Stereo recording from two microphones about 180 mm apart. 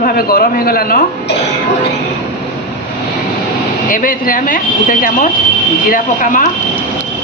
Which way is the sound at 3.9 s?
50° left (ahead or behind).